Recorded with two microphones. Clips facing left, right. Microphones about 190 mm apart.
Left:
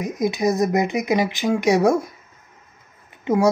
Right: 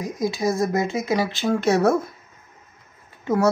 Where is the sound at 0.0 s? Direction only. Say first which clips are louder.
Left 3 dB; 20° left (ahead or behind).